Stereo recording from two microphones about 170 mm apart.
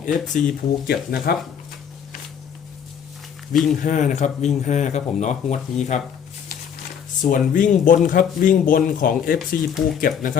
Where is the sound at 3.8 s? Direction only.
45° left (ahead or behind).